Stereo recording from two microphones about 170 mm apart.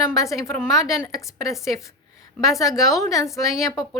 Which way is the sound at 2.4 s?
Centre (ahead or behind).